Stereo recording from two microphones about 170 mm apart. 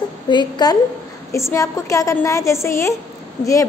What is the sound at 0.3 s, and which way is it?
A woman's voice, 25° left (ahead or behind).